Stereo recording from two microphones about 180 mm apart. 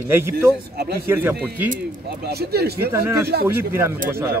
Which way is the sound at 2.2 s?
60° right (ahead or behind).